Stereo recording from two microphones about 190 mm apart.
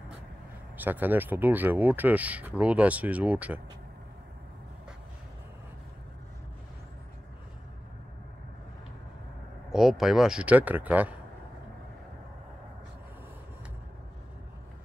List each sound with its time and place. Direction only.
0.7 s speech: 10° right (ahead or behind)
9.7 s speech: centre (ahead or behind)